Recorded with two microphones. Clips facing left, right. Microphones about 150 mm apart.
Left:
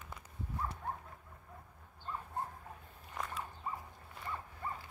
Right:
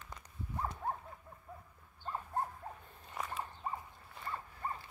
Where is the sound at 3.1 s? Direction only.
5° right (ahead or behind).